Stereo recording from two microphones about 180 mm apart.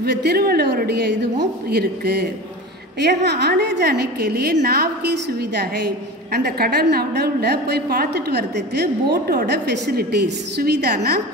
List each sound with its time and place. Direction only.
0.0 s a woman's voice: 65° right (ahead or behind)